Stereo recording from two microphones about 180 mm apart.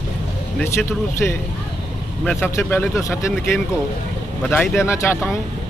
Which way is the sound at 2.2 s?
5° left (ahead or behind).